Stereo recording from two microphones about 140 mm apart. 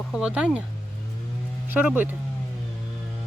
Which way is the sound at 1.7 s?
15° right (ahead or behind).